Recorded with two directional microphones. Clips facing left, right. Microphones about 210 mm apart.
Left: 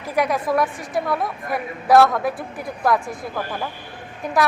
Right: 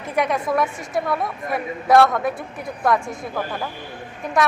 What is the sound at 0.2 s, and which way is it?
A woman's voice, centre (ahead or behind).